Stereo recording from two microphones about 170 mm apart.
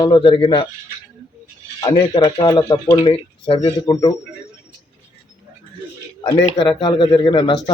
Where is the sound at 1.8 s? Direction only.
20° left (ahead or behind).